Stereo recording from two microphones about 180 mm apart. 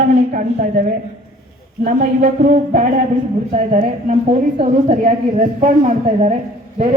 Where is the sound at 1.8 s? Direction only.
45° right (ahead or behind).